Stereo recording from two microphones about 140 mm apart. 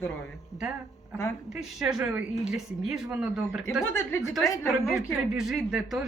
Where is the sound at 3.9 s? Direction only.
15° left (ahead or behind).